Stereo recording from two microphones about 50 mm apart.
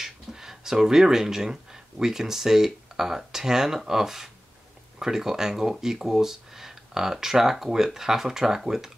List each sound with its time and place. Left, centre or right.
0.0 s speech: centre